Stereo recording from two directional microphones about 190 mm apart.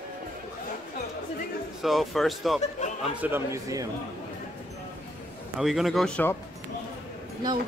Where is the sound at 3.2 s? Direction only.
15° right (ahead or behind).